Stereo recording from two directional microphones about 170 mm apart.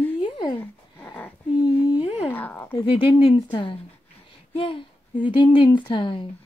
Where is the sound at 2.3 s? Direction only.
10° left (ahead or behind).